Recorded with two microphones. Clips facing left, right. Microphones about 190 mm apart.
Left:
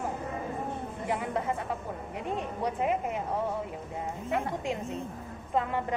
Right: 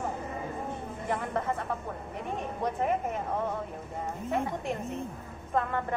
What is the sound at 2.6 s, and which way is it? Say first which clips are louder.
Speech: right 1 dB; 15° left (ahead or behind).